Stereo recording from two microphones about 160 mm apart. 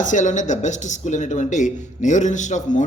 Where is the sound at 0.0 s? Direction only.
50° left (ahead or behind).